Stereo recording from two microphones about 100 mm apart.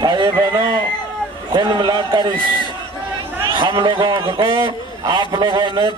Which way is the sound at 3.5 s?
55° right (ahead or behind).